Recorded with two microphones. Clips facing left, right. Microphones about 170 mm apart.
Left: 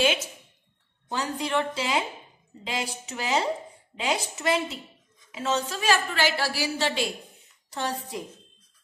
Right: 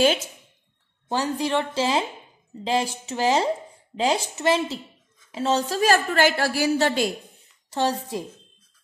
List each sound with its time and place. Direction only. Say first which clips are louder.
1.0 s a woman's voice: right 5 dB; 30° right (ahead or behind); by 7.1 s 45° right (ahead or behind)
7.7 s a woman's voice: right 7 dB; 30° right (ahead or behind)